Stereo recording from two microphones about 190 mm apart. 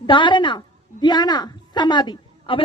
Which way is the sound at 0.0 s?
25° left (ahead or behind).